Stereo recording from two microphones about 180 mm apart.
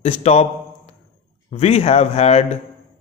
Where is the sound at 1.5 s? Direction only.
35° left (ahead or behind).